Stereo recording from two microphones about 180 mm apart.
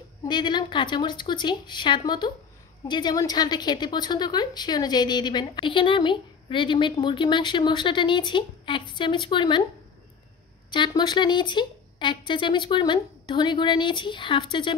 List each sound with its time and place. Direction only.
0.3 s a woman's voice: 25° left (ahead or behind)
10.7 s a woman's voice: 25° left (ahead or behind)